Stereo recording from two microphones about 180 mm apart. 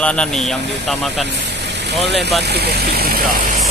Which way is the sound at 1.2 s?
70° right (ahead or behind).